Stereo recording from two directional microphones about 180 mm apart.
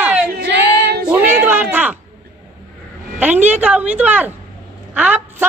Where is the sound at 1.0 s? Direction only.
10° right (ahead or behind).